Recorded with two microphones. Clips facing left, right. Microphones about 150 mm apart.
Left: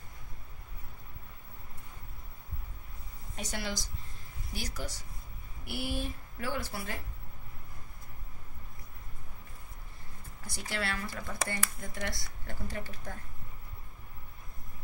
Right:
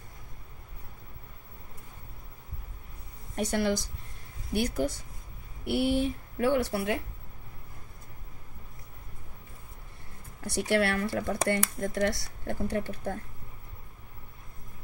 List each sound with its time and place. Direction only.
3.3 s speech: 55° right (ahead or behind)
10.4 s speech: 70° right (ahead or behind)